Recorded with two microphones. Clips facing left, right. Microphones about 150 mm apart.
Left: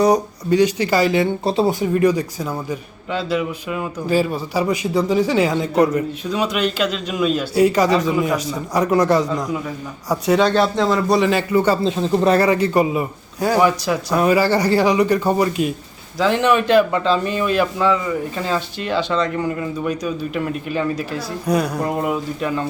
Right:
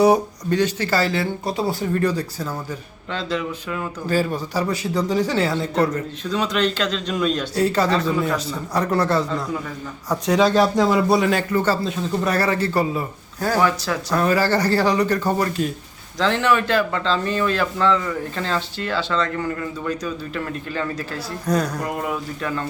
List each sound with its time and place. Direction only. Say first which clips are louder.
0.5 s a man's voice: left 4 dB; 15° left (ahead or behind)
1.5 s speech: left 6 dB; 25° left (ahead or behind)
1.8 s a man's voice: left 5 dB; 10° left (ahead or behind)
10.1 s a man's voice: left 2 dB; 5° left (ahead or behind)
10.5 s a man's voice: even; 10° right (ahead or behind); by 11.8 s 10° left (ahead or behind)
11.8 s speech: left 6 dB; 30° left (ahead or behind)
12.5 s a man's voice: left 4 dB; 15° left (ahead or behind)
21.8 s speech: left 5 dB; 25° left (ahead or behind)